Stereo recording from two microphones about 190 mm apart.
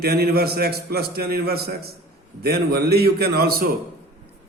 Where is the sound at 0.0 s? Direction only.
55° right (ahead or behind).